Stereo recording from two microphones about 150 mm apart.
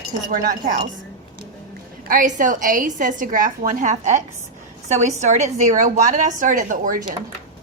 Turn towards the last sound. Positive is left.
turn(degrees=-60)  # may be behind; listen again after turning